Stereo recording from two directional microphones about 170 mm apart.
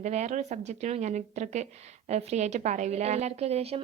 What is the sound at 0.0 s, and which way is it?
A woman's voice, 40° right (ahead or behind).